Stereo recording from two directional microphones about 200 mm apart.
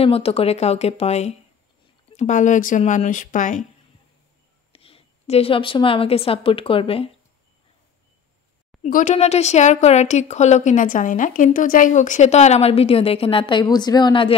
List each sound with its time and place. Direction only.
0.0 s a woman's voice: 30° left (ahead or behind)
4.7 s a woman's voice: 30° left (ahead or behind)
8.8 s a woman's voice: 35° left (ahead or behind)